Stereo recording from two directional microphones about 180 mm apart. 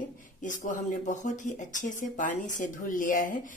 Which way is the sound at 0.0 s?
45° left (ahead or behind).